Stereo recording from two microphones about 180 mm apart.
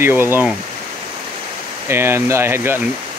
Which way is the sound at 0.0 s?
10° right (ahead or behind).